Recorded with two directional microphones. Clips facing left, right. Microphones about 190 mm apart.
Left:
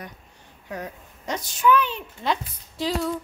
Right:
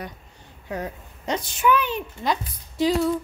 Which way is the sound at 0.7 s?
30° right (ahead or behind).